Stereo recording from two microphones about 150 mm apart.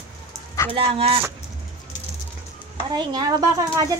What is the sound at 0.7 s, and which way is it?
Speech, 40° right (ahead or behind).